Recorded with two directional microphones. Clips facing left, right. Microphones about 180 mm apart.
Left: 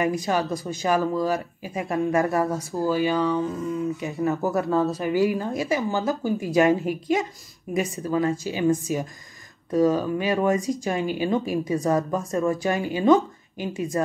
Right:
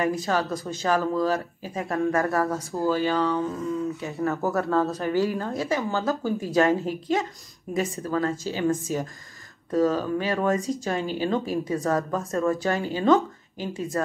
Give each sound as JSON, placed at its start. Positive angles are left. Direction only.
{"t": 0.0, "sound": "speech", "side_deg": 15}